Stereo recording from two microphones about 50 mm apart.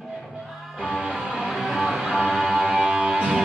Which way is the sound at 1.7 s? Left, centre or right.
Centre.